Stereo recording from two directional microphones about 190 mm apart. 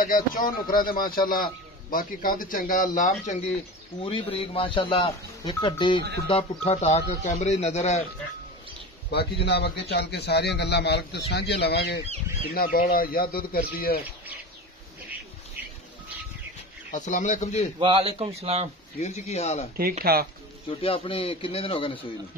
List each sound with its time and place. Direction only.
0.0 s speech: 45° left (ahead or behind)
4.0 s speech: 25° left (ahead or behind)
9.1 s a man's voice: 60° left (ahead or behind)
16.9 s speech: 40° left (ahead or behind)
17.7 s a man's voice: 30° right (ahead or behind)
18.9 s speech: 35° left (ahead or behind)
19.8 s speech: 50° right (ahead or behind)
20.6 s speech: 30° left (ahead or behind)